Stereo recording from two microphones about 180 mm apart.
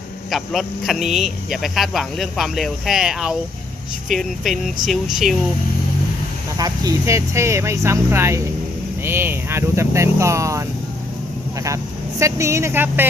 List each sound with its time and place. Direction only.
0.3 s speech: centre (ahead or behind)
6.6 s speech: 20° right (ahead or behind)
12.2 s speech: 15° right (ahead or behind)